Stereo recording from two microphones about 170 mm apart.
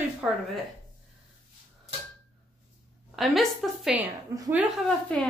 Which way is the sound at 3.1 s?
Centre (ahead or behind).